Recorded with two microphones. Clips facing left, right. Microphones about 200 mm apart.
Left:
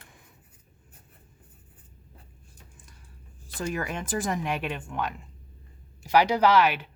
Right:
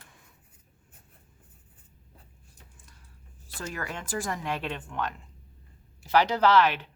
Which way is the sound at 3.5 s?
20° left (ahead or behind).